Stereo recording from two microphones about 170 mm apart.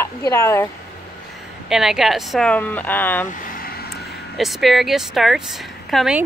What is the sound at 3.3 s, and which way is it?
Vehicle, 50° left (ahead or behind).